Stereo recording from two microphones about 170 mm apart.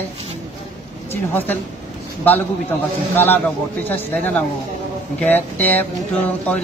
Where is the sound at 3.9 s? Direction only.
10° left (ahead or behind).